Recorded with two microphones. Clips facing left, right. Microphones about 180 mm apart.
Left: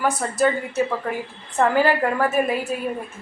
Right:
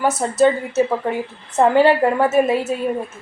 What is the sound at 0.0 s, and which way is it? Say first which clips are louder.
A woman's voice: right 5 dB; 25° right (ahead or behind).